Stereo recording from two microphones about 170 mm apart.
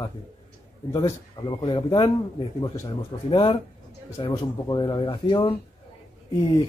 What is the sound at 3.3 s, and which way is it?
Speech, 30° left (ahead or behind).